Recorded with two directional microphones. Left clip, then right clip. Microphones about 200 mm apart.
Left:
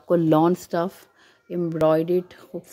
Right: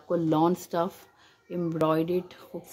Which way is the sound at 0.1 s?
30° left (ahead or behind).